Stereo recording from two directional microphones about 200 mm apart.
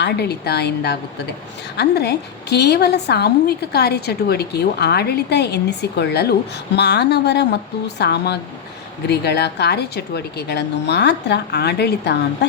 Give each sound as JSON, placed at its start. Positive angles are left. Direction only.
{"t": 0.0, "sound": "a woman's voice", "side_deg": 55}